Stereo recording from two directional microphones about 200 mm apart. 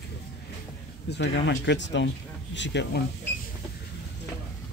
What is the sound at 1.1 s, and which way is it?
Speech, 60° left (ahead or behind).